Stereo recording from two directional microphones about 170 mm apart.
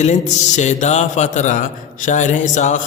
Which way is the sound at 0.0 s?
45° left (ahead or behind).